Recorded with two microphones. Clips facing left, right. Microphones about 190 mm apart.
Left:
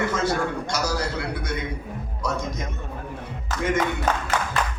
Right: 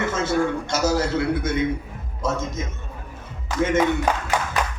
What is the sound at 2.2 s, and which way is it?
Speech, 25° right (ahead or behind).